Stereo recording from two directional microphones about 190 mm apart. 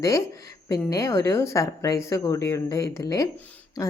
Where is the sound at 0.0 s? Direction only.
15° left (ahead or behind).